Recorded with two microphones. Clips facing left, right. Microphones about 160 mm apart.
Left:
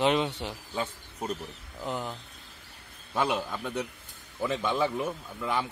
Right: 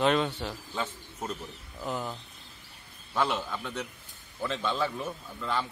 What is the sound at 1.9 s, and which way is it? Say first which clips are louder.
A man's voice: even; 15° left (ahead or behind).